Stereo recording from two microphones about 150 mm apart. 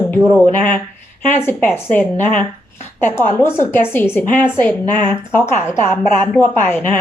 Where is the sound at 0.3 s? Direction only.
10° left (ahead or behind).